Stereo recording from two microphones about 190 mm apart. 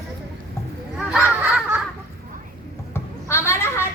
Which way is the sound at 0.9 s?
5° right (ahead or behind).